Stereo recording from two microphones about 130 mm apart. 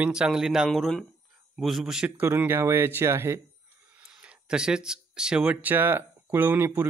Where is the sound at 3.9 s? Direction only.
10° right (ahead or behind).